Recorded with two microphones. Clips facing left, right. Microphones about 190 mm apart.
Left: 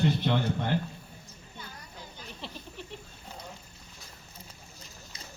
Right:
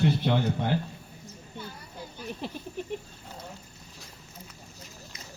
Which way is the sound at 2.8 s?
50° right (ahead or behind).